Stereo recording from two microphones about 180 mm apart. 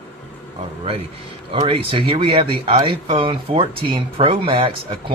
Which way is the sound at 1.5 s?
30° right (ahead or behind).